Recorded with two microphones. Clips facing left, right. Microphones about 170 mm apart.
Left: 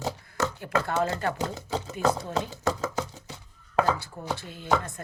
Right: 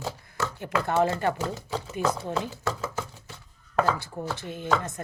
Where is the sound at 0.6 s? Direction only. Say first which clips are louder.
Right 4 dB; 20° right (ahead or behind).